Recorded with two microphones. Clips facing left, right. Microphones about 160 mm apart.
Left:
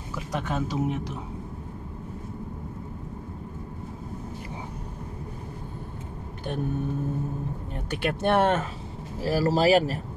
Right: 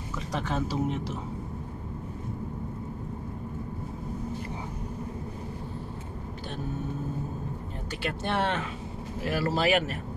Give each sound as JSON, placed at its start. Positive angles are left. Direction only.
{"t": 0.3, "sound": "speech", "side_deg": 0}
{"t": 7.9, "sound": "speech", "side_deg": 55}
{"t": 9.2, "sound": "speech", "side_deg": 35}